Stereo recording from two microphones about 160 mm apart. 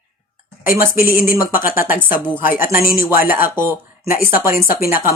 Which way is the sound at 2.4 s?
60° left (ahead or behind).